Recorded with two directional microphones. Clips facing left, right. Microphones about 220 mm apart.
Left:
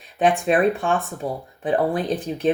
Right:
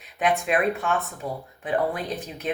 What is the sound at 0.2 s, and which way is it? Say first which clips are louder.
Speech: left 5 dB; 30° left (ahead or behind).